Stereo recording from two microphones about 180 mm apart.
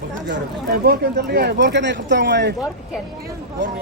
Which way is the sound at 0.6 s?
60° right (ahead or behind).